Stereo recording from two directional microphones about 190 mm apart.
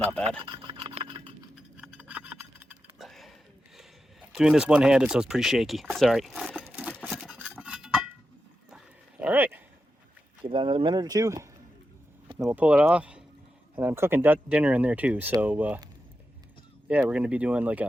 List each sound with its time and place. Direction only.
0.4 s rub: 25° right (ahead or behind)
1.5 s a sound: 5° right (ahead or behind)
3.8 s speech: 5° right (ahead or behind)
7.0 s a sound: 5° right (ahead or behind)
8.7 s dog: 5° right (ahead or behind)
10.4 s speech: 25° right (ahead or behind)
12.5 s speech: 10° right (ahead or behind)
17.1 s speech: 5° right (ahead or behind)